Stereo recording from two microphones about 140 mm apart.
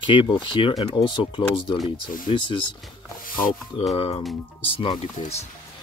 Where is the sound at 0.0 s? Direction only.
35° left (ahead or behind).